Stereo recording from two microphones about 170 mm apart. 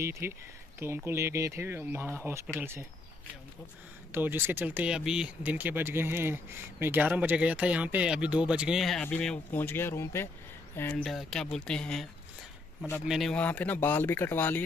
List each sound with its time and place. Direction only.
0.0 s speech: 15° right (ahead or behind)
4.1 s speech: 10° right (ahead or behind); by 10.9 s 15° left (ahead or behind)
11.1 s speech: centre (ahead or behind)